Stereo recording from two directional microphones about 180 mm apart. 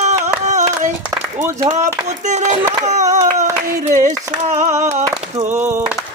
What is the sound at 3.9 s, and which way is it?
Speech, 40° right (ahead or behind).